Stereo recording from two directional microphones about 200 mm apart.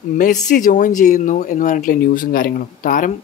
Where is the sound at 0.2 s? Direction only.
40° left (ahead or behind).